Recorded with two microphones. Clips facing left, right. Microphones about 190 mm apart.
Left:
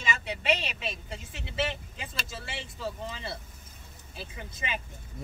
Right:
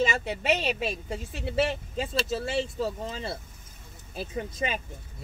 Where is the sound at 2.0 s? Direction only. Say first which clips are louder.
Right 12 dB; 40° right (ahead or behind).